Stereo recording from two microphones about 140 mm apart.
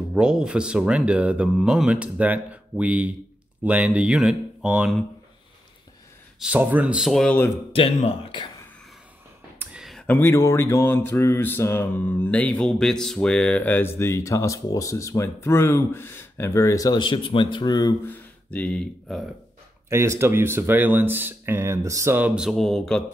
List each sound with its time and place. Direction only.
0.1 s speech: 5° right (ahead or behind)
6.4 s speech: 10° right (ahead or behind)
7.7 s speech: 45° left (ahead or behind)
9.6 s a sound: 5° right (ahead or behind)
10.0 s speech: 15° left (ahead or behind)
18.0 s speech: 10° left (ahead or behind)
19.9 s speech: 20° right (ahead or behind); by 23.0 s 5° left (ahead or behind)